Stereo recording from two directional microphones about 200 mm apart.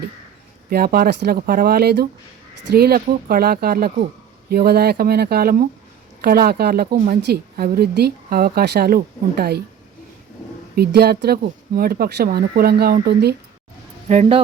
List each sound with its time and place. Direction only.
0.7 s a woman's voice: 50° right (ahead or behind)
10.8 s a woman's voice: 50° right (ahead or behind)
14.1 s speech: 30° right (ahead or behind)